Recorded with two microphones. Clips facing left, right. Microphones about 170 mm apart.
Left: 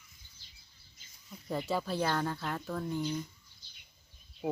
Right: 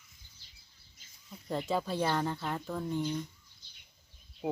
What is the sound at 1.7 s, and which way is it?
Speech, 5° left (ahead or behind).